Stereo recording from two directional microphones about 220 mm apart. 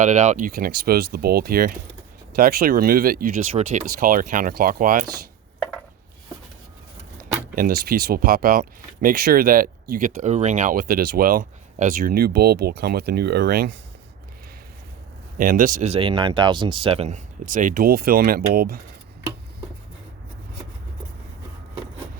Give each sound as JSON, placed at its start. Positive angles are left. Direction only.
{"t": 0.0, "sound": "speech", "side_deg": -35}
{"t": 7.5, "sound": "speech", "side_deg": -40}
{"t": 15.4, "sound": "speech", "side_deg": -40}